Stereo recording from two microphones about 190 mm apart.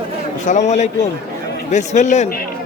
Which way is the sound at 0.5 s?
40° left (ahead or behind).